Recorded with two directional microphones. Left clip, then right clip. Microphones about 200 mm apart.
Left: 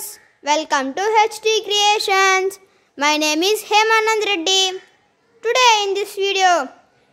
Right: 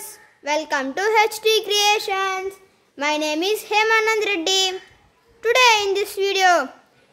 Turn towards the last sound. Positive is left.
turn(degrees=5)  # may be behind; listen again after turning